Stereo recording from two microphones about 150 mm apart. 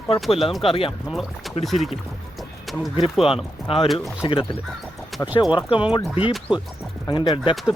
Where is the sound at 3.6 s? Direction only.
40° left (ahead or behind).